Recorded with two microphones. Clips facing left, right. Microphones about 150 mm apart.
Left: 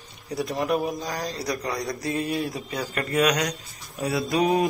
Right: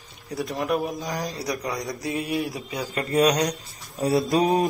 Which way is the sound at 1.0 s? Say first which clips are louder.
Even; 15° right (ahead or behind).